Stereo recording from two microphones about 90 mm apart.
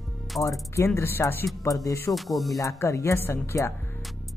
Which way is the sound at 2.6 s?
35° left (ahead or behind).